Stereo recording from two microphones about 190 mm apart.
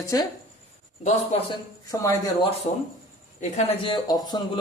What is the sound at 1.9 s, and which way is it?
Speech, 15° left (ahead or behind).